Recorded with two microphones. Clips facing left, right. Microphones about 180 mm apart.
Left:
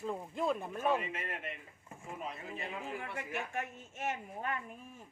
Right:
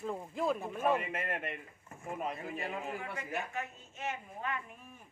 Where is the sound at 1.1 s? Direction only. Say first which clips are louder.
Right 4 dB; 55° right (ahead or behind).